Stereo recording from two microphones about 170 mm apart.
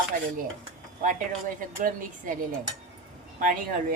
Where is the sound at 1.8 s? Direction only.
50° right (ahead or behind).